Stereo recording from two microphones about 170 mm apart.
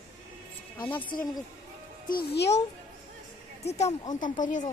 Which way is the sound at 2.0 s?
70° left (ahead or behind).